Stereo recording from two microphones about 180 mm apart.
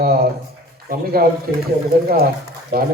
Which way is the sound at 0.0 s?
55° right (ahead or behind).